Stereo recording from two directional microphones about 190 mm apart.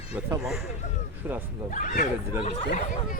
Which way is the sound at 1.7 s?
40° left (ahead or behind).